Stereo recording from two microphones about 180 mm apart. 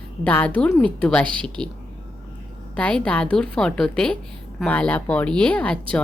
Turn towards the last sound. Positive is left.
turn(degrees=5)  # may be behind; listen again after turning